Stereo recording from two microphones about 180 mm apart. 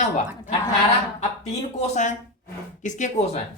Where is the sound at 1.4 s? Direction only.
40° left (ahead or behind).